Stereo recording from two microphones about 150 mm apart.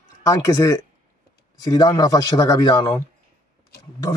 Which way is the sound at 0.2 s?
20° left (ahead or behind).